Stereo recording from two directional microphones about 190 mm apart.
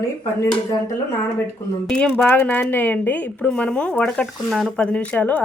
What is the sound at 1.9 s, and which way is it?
A woman's voice, 5° left (ahead or behind).